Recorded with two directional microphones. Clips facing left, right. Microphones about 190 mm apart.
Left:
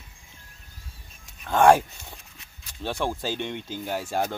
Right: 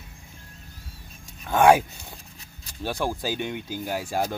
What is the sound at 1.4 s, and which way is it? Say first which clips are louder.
Speech: even; 5° right (ahead or behind).